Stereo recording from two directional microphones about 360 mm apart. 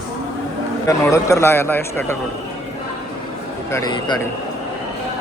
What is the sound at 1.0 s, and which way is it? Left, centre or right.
A man's voice, centre.